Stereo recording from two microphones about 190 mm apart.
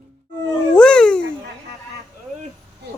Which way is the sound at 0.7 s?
5° left (ahead or behind).